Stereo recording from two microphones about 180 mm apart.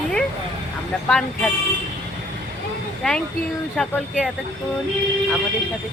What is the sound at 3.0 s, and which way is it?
Speech, 5° left (ahead or behind).